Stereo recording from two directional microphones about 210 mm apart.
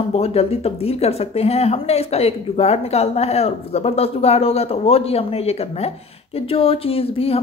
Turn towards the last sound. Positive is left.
turn(degrees=30)  # may be behind; listen again after turning